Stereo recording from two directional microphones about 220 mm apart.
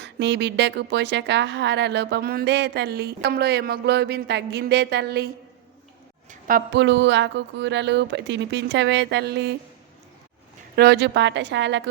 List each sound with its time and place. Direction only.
0.0 s a woman's voice: 50° right (ahead or behind)
6.7 s a woman's voice: 55° right (ahead or behind)
10.8 s a woman's voice: 50° right (ahead or behind)